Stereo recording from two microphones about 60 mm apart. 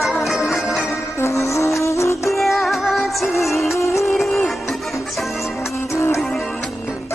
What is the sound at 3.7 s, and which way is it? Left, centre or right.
Music, left.